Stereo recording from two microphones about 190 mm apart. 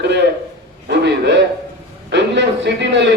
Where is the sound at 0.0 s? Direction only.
65° right (ahead or behind).